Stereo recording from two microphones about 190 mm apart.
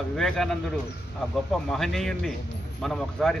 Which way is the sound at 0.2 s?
Centre (ahead or behind).